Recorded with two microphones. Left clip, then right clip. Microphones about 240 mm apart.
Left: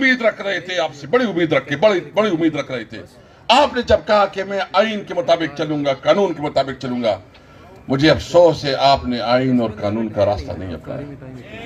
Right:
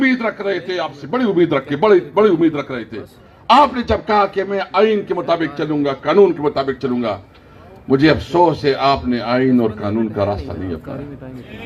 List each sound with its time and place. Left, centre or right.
0.0 s a man's voice: left